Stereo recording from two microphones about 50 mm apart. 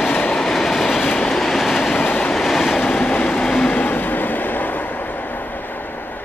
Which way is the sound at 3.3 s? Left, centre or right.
Centre.